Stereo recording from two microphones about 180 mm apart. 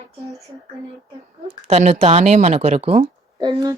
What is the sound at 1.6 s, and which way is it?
Speech, 35° right (ahead or behind).